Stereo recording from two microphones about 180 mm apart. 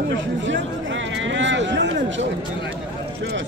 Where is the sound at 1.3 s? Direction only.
90° right.